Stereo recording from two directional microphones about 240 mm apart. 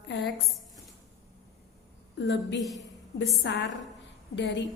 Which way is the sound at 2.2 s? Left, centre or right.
Left.